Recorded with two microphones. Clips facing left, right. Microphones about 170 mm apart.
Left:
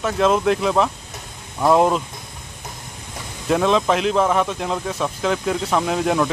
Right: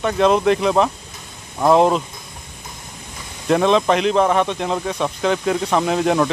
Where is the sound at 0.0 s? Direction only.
Centre (ahead or behind).